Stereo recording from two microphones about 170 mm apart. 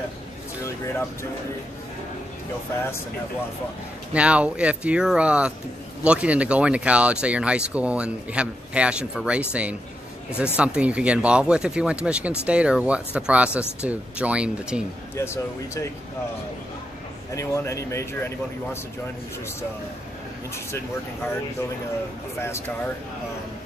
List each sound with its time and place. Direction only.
4.1 s speech: 5° right (ahead or behind)
15.1 s speech: 15° left (ahead or behind)
17.4 s speech: 20° left (ahead or behind)
20.5 s speech: 15° left (ahead or behind)